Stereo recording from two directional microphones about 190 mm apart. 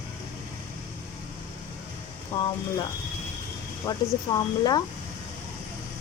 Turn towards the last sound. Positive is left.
turn(degrees=20)  # may be behind; listen again after turning